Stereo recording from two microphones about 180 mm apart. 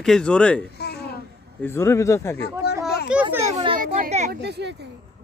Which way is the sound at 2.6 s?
65° left (ahead or behind).